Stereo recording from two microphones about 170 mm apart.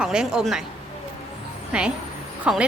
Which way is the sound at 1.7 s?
5° right (ahead or behind).